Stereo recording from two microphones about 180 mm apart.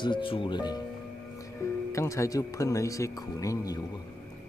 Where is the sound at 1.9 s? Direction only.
15° left (ahead or behind).